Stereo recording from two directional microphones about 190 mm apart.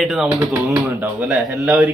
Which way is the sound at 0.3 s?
15° right (ahead or behind).